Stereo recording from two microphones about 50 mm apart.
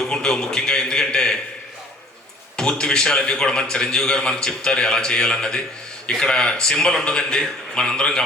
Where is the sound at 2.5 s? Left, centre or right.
Centre.